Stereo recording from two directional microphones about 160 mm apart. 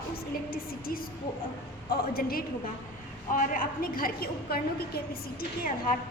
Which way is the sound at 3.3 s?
55° left (ahead or behind).